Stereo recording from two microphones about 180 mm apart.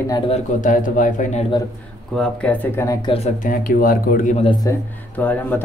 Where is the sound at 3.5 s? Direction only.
50° left (ahead or behind); by 4.6 s 35° left (ahead or behind).